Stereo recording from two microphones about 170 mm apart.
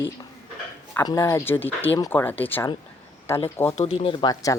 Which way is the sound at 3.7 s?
35° left (ahead or behind).